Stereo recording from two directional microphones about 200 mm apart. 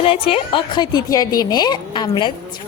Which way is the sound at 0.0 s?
30° left (ahead or behind).